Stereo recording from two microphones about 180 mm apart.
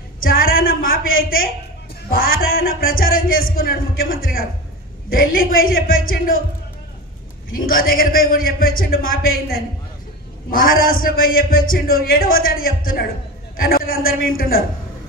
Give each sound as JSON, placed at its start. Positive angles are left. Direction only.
{"t": 0.2, "sound": "a man's voice", "side_deg": 55}
{"t": 7.5, "sound": "a man's voice", "side_deg": 50}